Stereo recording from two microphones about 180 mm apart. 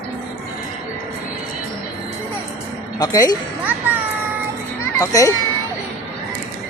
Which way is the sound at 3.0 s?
20° left (ahead or behind).